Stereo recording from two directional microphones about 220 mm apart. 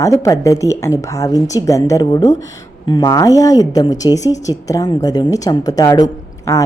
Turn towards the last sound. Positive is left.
turn(degrees=15)  # may be behind; listen again after turning